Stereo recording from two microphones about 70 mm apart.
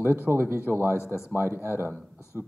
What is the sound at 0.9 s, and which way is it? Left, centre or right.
Speech, left.